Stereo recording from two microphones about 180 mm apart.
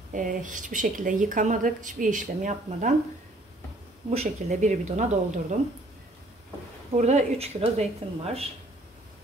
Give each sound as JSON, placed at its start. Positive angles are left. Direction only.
{"t": 0.1, "sound": "speech", "side_deg": -45}
{"t": 4.1, "sound": "speech", "side_deg": -40}
{"t": 6.9, "sound": "speech", "side_deg": -40}